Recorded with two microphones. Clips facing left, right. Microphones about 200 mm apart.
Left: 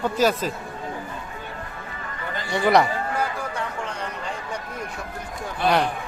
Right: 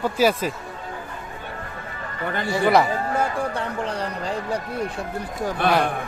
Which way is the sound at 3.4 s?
35° right (ahead or behind).